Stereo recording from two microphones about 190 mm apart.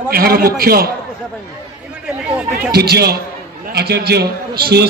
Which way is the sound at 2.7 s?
55° right (ahead or behind).